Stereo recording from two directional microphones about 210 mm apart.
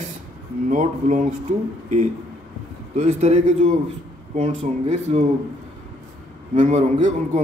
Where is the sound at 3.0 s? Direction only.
30° right (ahead or behind).